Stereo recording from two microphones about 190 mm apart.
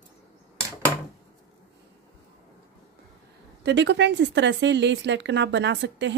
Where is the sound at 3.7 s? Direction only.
65° right (ahead or behind).